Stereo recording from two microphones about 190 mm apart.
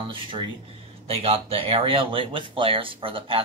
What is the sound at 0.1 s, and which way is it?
Speech, 25° right (ahead or behind).